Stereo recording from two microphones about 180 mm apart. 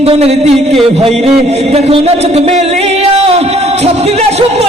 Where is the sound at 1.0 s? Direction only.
35° right (ahead or behind).